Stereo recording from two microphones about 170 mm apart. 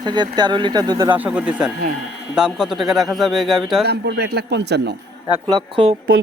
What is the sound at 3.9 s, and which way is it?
Speech, 75° right (ahead or behind).